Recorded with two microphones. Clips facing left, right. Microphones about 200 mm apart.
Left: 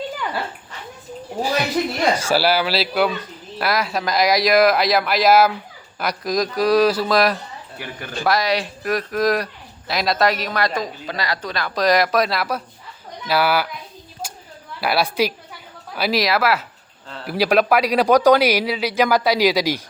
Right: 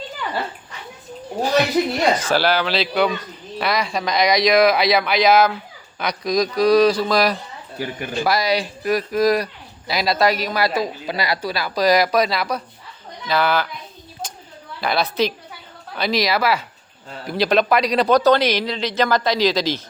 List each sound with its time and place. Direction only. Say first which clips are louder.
2.1 s a man's voice: even; 10° left (ahead or behind)
7.8 s speech: right 6 dB; 15° right (ahead or behind)
8.2 s a man's voice: even; centre (ahead or behind)
14.8 s a man's voice: left 1 dB; 10° left (ahead or behind)